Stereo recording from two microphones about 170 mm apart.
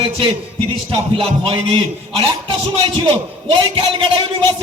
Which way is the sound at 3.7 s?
30° right (ahead or behind).